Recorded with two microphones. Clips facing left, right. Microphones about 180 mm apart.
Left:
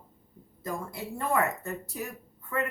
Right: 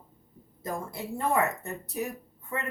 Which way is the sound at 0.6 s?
20° right (ahead or behind).